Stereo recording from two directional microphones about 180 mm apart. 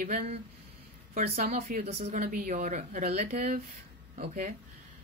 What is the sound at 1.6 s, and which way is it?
Speech, 55° right (ahead or behind).